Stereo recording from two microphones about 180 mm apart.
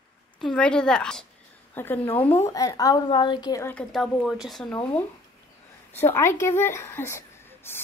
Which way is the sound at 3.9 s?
Centre (ahead or behind).